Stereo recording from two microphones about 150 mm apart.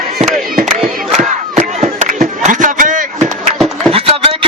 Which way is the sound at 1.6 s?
50° right (ahead or behind).